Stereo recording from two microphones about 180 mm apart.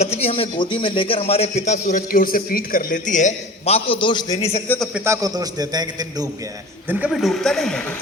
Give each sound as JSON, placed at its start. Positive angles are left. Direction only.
{"t": 0.0, "sound": "a man's voice", "side_deg": 35}
{"t": 4.9, "sound": "a man's voice", "side_deg": -15}
{"t": 6.8, "sound": "speech", "side_deg": -5}